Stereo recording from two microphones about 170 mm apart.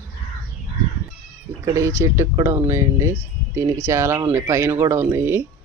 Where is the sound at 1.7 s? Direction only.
15° right (ahead or behind).